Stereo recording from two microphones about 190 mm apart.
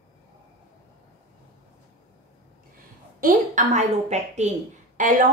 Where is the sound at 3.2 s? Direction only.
45° right (ahead or behind).